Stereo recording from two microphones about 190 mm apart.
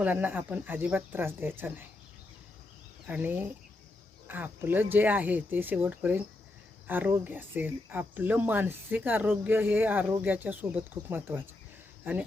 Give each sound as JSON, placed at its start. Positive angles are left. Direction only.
{"t": 0.0, "sound": "speech", "side_deg": -10}
{"t": 3.1, "sound": "speech", "side_deg": -10}